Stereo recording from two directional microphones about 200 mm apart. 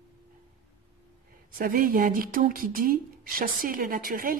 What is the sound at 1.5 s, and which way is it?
Speech, 45° right (ahead or behind).